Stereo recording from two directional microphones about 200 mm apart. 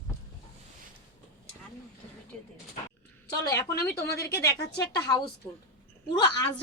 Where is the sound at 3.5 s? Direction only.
15° left (ahead or behind).